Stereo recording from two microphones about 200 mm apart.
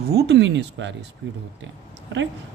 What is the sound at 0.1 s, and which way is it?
Speech, 55° right (ahead or behind).